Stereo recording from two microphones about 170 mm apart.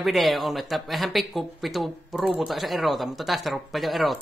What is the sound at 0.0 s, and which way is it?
Speech, centre (ahead or behind).